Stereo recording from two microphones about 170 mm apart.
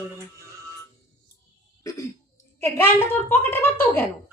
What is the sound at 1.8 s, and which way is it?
Cough, 20° left (ahead or behind).